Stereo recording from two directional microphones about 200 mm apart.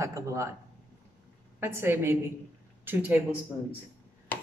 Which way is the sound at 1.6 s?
10° right (ahead or behind).